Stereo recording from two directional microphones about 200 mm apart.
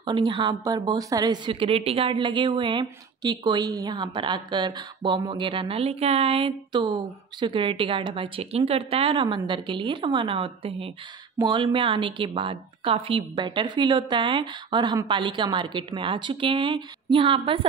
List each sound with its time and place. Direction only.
0.0 s a woman's voice: 25° right (ahead or behind)